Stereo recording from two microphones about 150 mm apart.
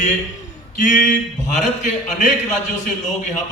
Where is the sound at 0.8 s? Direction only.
60° left (ahead or behind).